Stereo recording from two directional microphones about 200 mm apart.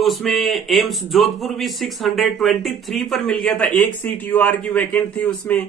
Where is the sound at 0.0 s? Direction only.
Centre (ahead or behind).